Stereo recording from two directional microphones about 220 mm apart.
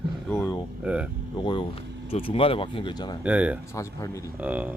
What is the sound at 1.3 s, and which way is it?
Speech, 20° left (ahead or behind).